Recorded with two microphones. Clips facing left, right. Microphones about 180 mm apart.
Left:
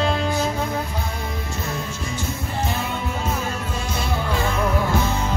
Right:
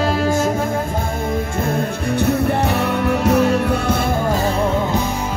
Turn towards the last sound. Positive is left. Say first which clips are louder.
# right 11 dB
turn(degrees=-70)  # may be behind; listen again after turning